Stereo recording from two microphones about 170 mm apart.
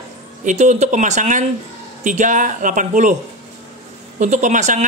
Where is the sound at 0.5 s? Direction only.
45° right (ahead or behind).